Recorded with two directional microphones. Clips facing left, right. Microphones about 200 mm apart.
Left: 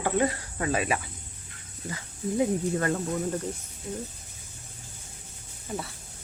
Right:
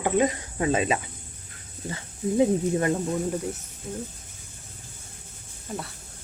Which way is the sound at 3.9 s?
Centre (ahead or behind).